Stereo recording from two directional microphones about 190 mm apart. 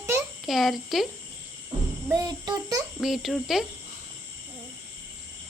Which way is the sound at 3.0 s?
Centre (ahead or behind).